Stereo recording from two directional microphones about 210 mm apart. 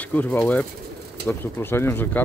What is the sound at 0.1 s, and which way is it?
Speech, 10° left (ahead or behind).